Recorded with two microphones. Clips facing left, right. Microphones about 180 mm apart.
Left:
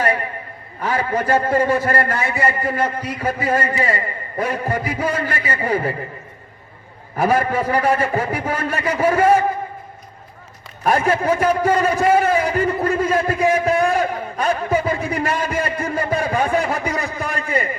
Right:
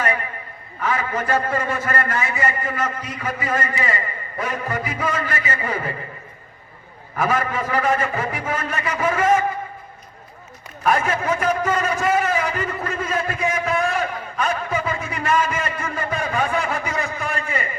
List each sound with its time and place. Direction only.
0.8 s a man's voice: 35° left (ahead or behind)
7.2 s a man's voice: 35° left (ahead or behind)
10.8 s a man's voice: 35° left (ahead or behind)
15.5 s a sound: 35° left (ahead or behind)